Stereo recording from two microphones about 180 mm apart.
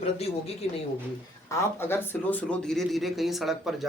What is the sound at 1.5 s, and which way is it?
Speech, 15° left (ahead or behind).